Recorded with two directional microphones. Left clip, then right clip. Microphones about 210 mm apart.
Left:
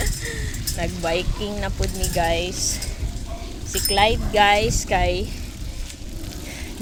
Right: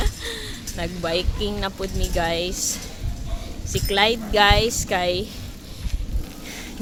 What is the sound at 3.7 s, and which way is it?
A woman's voice, 20° right (ahead or behind).